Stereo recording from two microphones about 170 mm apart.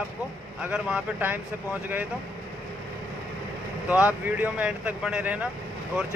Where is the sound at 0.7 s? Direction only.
5° right (ahead or behind).